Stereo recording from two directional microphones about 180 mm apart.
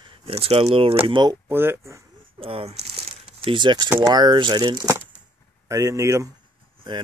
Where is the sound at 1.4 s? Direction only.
10° right (ahead or behind).